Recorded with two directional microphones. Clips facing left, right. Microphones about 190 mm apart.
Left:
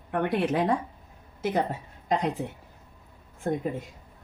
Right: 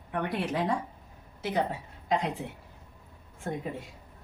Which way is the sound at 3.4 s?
45° left (ahead or behind).